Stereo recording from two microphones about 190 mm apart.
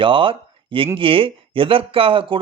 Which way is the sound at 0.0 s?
25° right (ahead or behind).